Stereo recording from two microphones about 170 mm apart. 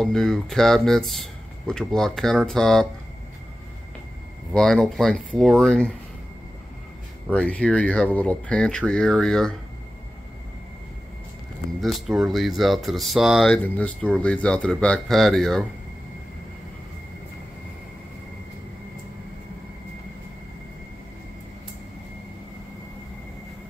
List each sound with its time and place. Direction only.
0.0 s speech: centre (ahead or behind)
4.6 s speech: centre (ahead or behind)
7.2 s speech: 5° left (ahead or behind)
11.8 s speech: centre (ahead or behind)